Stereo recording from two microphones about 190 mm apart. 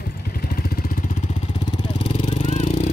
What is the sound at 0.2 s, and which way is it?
Vehicle, 55° left (ahead or behind).